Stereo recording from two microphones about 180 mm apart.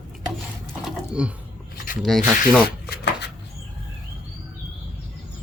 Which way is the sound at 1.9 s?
50° left (ahead or behind).